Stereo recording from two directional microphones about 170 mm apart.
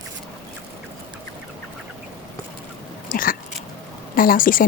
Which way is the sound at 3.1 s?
55° left (ahead or behind).